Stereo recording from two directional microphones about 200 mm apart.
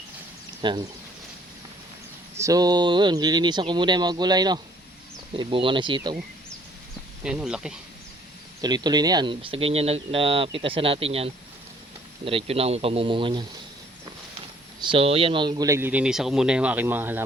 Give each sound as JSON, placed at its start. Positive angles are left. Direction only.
{"t": 0.6, "sound": "speech", "side_deg": -25}
{"t": 2.3, "sound": "speech", "side_deg": -15}
{"t": 7.3, "sound": "speech", "side_deg": -5}
{"t": 8.6, "sound": "speech", "side_deg": -20}
{"t": 14.8, "sound": "speech", "side_deg": -25}